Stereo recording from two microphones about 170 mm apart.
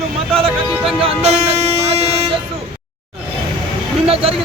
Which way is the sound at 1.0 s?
40° right (ahead or behind).